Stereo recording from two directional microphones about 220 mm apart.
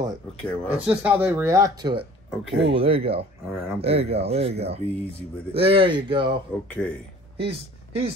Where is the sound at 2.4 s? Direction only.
Centre (ahead or behind).